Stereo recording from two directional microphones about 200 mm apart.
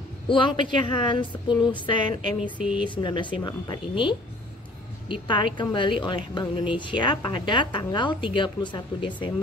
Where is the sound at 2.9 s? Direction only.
25° left (ahead or behind).